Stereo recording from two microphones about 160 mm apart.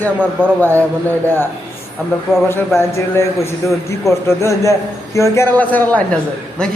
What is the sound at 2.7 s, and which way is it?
A man's voice, 15° left (ahead or behind).